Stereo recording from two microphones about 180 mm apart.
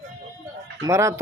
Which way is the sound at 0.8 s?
15° right (ahead or behind).